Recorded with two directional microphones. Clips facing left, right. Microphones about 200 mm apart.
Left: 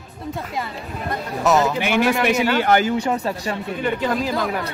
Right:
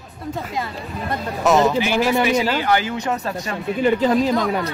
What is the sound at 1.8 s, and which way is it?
Speech, 60° left (ahead or behind).